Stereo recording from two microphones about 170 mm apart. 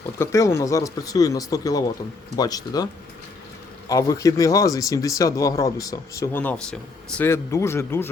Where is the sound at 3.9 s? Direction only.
20° left (ahead or behind).